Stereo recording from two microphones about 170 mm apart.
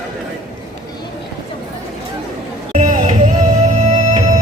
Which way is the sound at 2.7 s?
45° right (ahead or behind).